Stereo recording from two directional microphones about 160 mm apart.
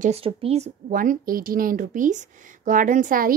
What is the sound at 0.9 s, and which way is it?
A woman's voice, 60° right (ahead or behind).